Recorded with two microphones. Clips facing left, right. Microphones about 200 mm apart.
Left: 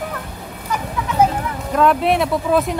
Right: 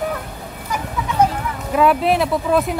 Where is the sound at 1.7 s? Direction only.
5° right (ahead or behind).